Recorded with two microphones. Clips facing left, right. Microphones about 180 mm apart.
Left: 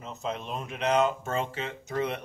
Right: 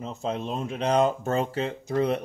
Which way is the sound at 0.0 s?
30° right (ahead or behind).